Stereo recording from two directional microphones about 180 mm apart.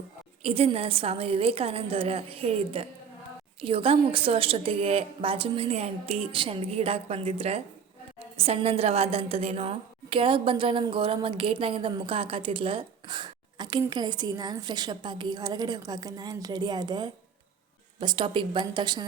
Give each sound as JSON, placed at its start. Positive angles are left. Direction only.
{"t": 0.4, "sound": "a woman's voice", "side_deg": -35}